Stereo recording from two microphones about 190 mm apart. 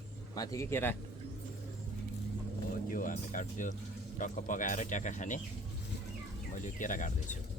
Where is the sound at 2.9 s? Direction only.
45° left (ahead or behind).